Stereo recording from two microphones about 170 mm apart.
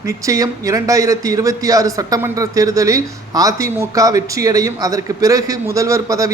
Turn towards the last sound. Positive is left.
turn(degrees=-20)  # may be behind; listen again after turning